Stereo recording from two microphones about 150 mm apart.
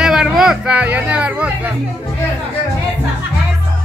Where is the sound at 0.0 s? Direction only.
5° right (ahead or behind).